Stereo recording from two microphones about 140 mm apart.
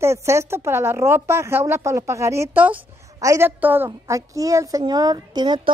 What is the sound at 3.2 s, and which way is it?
A woman's voice, 20° right (ahead or behind).